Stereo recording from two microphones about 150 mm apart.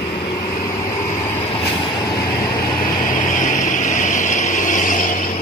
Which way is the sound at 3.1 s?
60° left (ahead or behind).